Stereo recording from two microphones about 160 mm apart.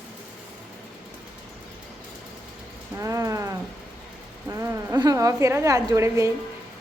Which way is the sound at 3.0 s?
20° right (ahead or behind).